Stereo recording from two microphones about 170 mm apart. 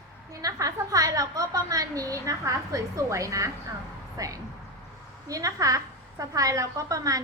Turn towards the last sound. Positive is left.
turn(degrees=-20)  # may be behind; listen again after turning